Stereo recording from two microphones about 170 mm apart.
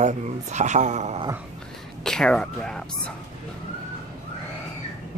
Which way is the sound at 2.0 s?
5° left (ahead or behind).